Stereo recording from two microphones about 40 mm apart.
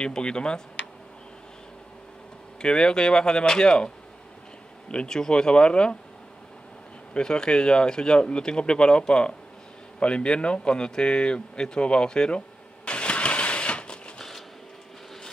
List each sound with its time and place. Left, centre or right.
0.0 s speech: left
2.6 s speech: left
5.0 s speech: centre
7.2 s speech: centre
9.9 s a sound: left
14.1 s a sound: centre